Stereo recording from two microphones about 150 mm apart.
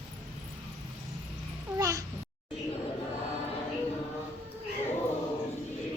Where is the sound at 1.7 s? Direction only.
20° right (ahead or behind).